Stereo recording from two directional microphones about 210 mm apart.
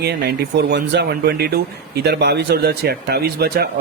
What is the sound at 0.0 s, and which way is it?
Speech, 50° right (ahead or behind).